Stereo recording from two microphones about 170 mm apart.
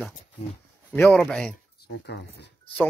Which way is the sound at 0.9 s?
5° left (ahead or behind).